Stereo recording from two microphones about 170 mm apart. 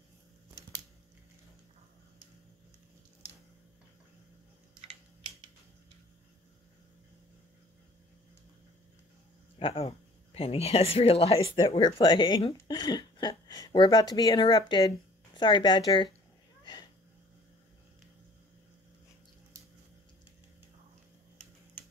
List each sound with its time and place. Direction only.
9.6 s speech: 35° left (ahead or behind)